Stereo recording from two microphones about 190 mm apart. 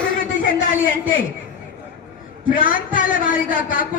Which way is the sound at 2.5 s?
45° left (ahead or behind).